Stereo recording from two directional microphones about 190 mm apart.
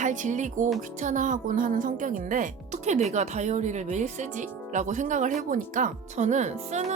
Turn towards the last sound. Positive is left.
turn(degrees=-40)  # may be behind; listen again after turning